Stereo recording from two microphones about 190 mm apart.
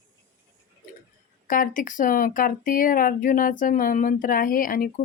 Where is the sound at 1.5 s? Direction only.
45° left (ahead or behind).